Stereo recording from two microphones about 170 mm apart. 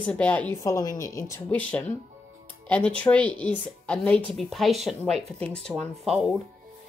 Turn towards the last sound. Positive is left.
turn(degrees=0)  # may be behind; listen again after turning